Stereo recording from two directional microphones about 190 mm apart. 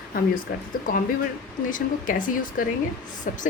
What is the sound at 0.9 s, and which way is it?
A woman's voice, 45° left (ahead or behind).